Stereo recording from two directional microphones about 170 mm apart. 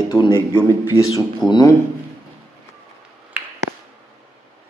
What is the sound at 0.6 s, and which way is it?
A man's voice, 20° left (ahead or behind).